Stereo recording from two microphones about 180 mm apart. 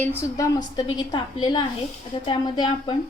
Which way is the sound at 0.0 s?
15° left (ahead or behind).